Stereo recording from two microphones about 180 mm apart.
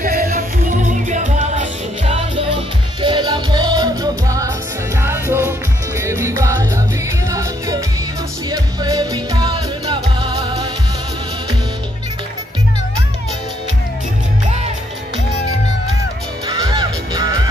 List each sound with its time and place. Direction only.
0.0 s music: 55° right (ahead or behind)
1.0 s music: 45° right (ahead or behind); by 10.7 s 20° right (ahead or behind)
16.4 s music: 25° right (ahead or behind)